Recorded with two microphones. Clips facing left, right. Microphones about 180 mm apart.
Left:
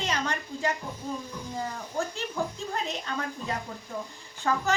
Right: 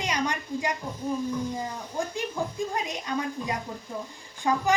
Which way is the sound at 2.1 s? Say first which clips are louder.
Right 2 dB; 10° right (ahead or behind).